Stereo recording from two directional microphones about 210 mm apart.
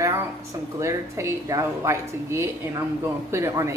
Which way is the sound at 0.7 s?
15° right (ahead or behind).